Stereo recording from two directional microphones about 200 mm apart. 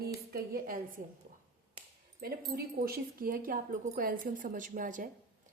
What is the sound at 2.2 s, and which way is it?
Speech, 50° right (ahead or behind).